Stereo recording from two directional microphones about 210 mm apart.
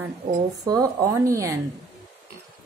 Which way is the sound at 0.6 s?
15° right (ahead or behind).